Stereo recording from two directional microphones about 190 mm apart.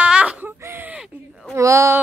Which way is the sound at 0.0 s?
5° right (ahead or behind).